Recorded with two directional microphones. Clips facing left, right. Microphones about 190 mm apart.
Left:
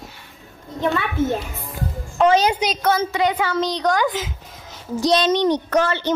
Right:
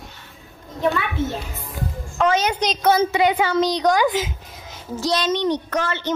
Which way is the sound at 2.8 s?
10° right (ahead or behind).